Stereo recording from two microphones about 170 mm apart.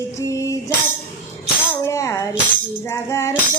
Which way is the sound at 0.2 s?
20° left (ahead or behind).